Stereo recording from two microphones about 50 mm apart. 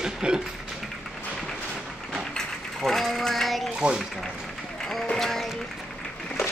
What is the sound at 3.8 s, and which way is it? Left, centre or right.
Speech, right.